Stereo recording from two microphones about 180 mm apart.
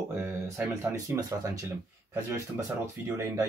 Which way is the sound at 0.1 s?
15° right (ahead or behind).